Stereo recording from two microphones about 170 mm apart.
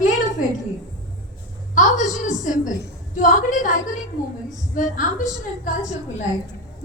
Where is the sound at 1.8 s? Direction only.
45° left (ahead or behind).